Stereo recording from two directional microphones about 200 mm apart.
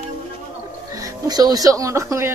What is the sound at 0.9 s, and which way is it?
Speech, 15° right (ahead or behind).